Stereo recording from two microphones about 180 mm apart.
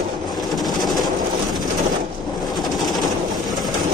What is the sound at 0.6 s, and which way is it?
Train, centre (ahead or behind).